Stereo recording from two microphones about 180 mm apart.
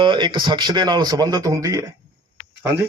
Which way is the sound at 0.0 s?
25° right (ahead or behind).